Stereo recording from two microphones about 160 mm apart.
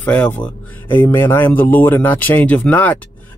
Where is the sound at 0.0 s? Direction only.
10° left (ahead or behind).